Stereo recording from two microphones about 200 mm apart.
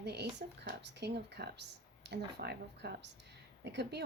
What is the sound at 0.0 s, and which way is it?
Speech, 55° right (ahead or behind).